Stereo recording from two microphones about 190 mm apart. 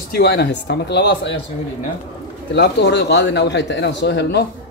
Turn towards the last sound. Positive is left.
turn(degrees=65)  # may be behind; listen again after turning